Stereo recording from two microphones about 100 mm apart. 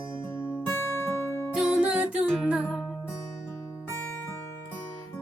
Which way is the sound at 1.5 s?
10° right (ahead or behind).